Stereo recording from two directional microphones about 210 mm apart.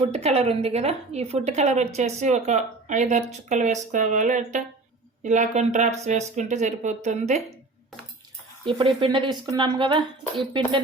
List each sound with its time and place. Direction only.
0.0 s a woman's voice: 30° right (ahead or behind)
8.6 s a woman's voice: 25° right (ahead or behind)